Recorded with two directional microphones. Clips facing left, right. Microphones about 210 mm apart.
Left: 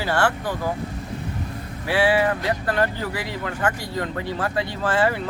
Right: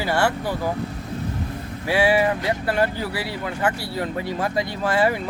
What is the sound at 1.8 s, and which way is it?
Speech, 10° right (ahead or behind).